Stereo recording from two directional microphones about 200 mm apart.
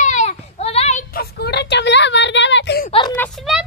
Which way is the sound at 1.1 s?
50° left (ahead or behind).